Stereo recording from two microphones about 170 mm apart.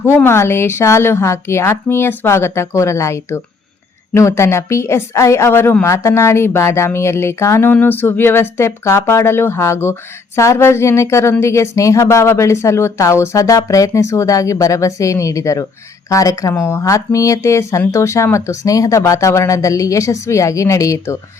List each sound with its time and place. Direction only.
0.0 s a woman's voice: 15° left (ahead or behind)